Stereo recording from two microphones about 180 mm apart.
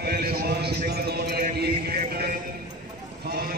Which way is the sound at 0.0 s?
60° right (ahead or behind).